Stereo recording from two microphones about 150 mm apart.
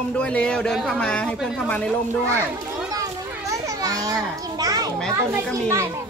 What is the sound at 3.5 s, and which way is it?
Children playing, 20° right (ahead or behind).